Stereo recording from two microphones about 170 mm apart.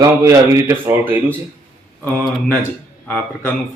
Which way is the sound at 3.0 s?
10° left (ahead or behind).